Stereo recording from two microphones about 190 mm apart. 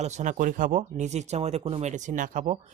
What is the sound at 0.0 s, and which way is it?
Speech, 40° right (ahead or behind).